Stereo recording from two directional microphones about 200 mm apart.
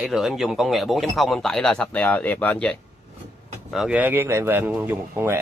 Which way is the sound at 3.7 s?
5° right (ahead or behind).